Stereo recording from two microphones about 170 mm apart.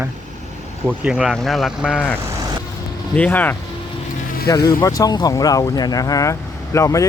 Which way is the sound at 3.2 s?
10° left (ahead or behind).